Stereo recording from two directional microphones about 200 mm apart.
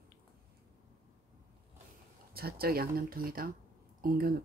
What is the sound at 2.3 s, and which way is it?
Speech, 50° right (ahead or behind).